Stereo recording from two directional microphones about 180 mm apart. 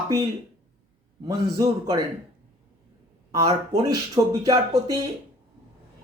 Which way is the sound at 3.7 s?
20° right (ahead or behind).